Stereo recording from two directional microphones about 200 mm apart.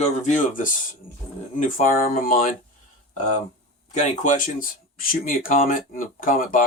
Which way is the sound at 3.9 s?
40° left (ahead or behind).